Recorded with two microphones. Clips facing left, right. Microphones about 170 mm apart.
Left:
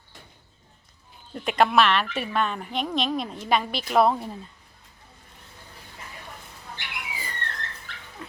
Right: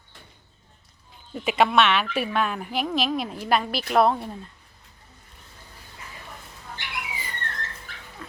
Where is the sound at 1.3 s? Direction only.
5° right (ahead or behind).